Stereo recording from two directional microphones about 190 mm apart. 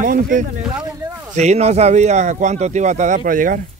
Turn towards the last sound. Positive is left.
turn(degrees=-45)  # may be behind; listen again after turning